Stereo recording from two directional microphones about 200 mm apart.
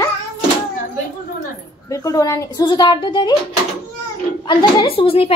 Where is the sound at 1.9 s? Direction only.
15° left (ahead or behind).